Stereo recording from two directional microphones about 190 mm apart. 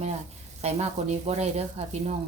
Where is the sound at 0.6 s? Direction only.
35° right (ahead or behind).